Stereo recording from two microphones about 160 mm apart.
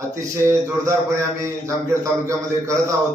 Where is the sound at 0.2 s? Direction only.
20° right (ahead or behind).